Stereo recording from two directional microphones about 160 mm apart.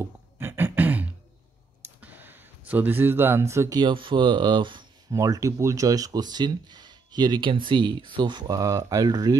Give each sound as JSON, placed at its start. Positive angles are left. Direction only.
{"t": 0.0, "sound": "beatboxing", "side_deg": -15}
{"t": 2.0, "sound": "speech", "side_deg": -10}